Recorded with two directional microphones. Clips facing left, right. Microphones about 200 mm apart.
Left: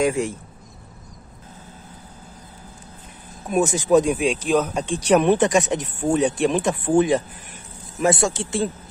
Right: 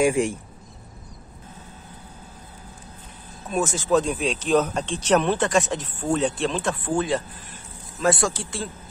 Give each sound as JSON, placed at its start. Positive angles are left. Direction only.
{"t": 0.0, "sound": "speech", "side_deg": -15}
{"t": 3.4, "sound": "speech", "side_deg": 15}